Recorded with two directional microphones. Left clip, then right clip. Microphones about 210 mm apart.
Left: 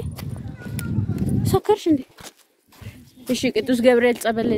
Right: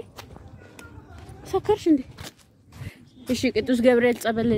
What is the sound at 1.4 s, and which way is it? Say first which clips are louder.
Speech: left 3 dB; 15° left (ahead or behind).